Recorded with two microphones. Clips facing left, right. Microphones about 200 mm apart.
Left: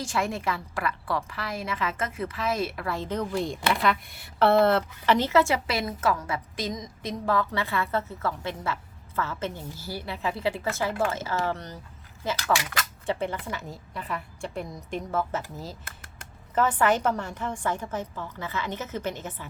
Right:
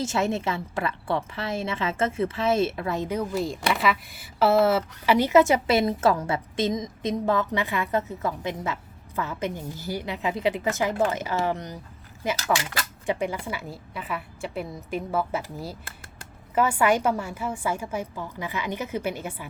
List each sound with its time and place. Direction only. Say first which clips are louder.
0.0 s a woman's voice: right 3 dB; 25° right (ahead or behind)